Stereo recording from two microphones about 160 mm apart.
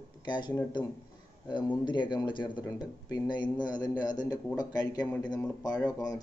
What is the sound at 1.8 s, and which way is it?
Speech, 30° left (ahead or behind).